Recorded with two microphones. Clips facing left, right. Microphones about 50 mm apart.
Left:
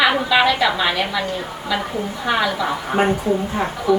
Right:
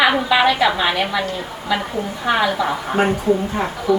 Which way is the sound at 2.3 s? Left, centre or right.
Centre.